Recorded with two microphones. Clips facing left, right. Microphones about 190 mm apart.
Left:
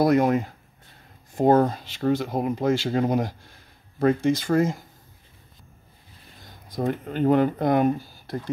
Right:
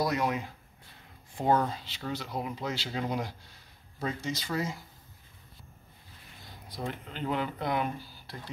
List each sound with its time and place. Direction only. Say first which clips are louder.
0.0 s speech: left 10 dB; 50° left (ahead or behind)
6.4 s speech: left 11 dB; 45° left (ahead or behind)